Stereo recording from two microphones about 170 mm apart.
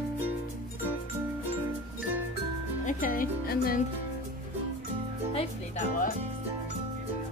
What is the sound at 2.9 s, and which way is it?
Speech, 50° left (ahead or behind).